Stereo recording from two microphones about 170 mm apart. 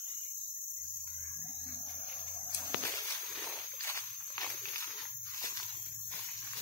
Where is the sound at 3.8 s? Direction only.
20° left (ahead or behind).